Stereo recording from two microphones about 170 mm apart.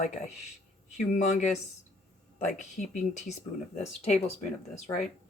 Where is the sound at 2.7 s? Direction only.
45° left (ahead or behind).